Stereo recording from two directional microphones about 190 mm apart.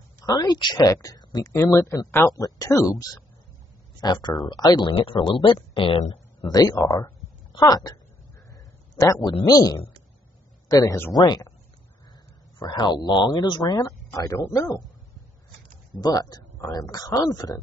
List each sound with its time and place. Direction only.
0.2 s speech: 20° left (ahead or behind)
6.5 s a woman's voice: 20° left (ahead or behind)
12.5 s speech: 25° left (ahead or behind)
16.0 s speech: 20° left (ahead or behind)